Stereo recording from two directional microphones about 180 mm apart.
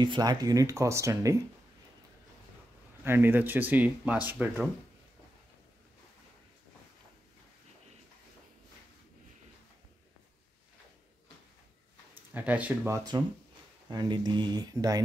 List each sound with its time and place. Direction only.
0.0 s speech: 25° right (ahead or behind)
3.0 s speech: 10° right (ahead or behind)
12.4 s speech: 10° right (ahead or behind)
13.8 s speech: 25° right (ahead or behind)